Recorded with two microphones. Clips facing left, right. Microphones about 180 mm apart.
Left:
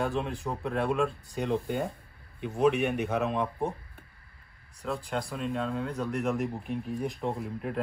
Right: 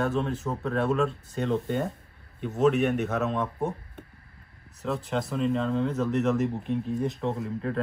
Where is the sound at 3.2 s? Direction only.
15° left (ahead or behind).